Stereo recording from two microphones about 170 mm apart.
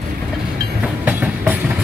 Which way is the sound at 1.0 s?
10° right (ahead or behind).